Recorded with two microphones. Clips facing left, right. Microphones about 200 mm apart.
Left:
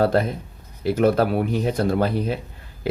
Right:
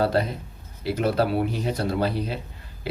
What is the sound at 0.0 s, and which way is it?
Speech, 50° left (ahead or behind).